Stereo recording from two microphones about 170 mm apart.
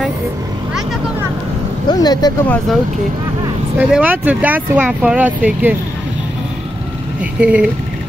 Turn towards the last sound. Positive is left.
turn(degrees=-5)  # may be behind; listen again after turning